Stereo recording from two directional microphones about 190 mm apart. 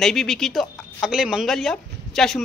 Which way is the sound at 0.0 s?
Centre (ahead or behind).